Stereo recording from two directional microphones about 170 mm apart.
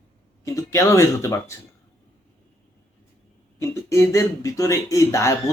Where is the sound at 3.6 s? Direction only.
15° left (ahead or behind).